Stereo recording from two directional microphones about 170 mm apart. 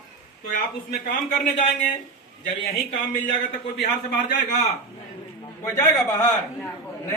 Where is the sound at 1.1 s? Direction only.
45° left (ahead or behind).